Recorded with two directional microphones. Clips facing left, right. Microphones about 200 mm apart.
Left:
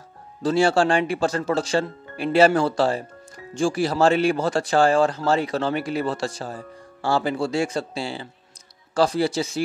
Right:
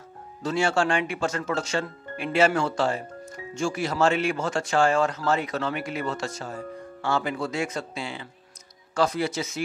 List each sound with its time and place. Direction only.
0.4 s speech: 35° left (ahead or behind)